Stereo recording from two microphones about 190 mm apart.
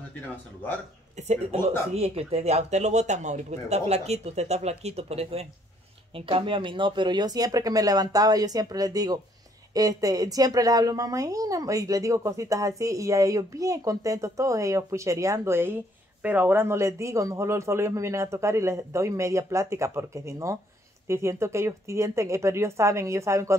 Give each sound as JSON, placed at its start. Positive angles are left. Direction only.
{"t": 1.1, "sound": "speech", "side_deg": -35}